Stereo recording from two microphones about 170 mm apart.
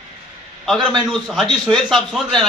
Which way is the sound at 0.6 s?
Centre (ahead or behind).